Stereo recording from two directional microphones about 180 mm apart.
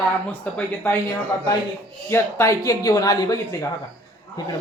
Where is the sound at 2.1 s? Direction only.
15° left (ahead or behind).